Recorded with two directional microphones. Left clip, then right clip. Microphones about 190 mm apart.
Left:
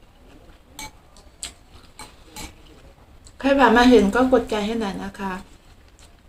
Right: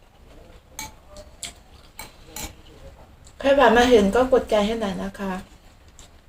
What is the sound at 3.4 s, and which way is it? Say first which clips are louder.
A woman's voice: even; 20° left (ahead or behind).